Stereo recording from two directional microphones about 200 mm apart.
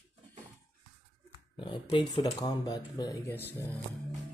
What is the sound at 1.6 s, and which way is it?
Speech, 25° left (ahead or behind).